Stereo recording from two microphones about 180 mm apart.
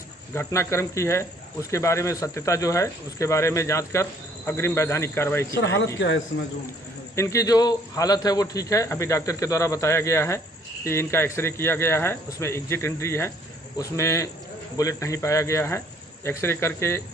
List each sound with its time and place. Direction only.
0.3 s a man's voice: 15° left (ahead or behind)
5.9 s a man's voice: 90° left
7.2 s a man's voice: 15° left (ahead or behind)